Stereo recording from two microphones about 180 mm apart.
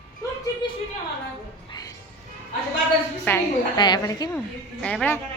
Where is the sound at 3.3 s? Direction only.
10° left (ahead or behind).